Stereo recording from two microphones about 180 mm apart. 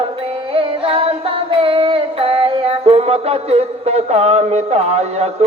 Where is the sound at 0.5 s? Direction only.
30° right (ahead or behind).